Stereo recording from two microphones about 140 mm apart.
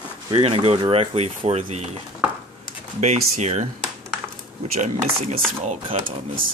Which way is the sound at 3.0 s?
50° right (ahead or behind).